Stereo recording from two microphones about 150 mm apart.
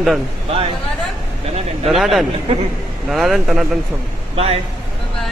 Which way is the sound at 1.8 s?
Centre (ahead or behind).